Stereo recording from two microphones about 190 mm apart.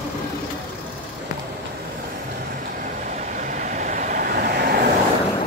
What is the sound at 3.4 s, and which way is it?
Vehicle, 40° right (ahead or behind).